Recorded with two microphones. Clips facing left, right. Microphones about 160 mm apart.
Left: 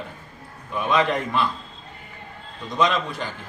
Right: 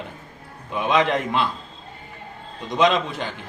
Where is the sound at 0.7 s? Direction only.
20° right (ahead or behind).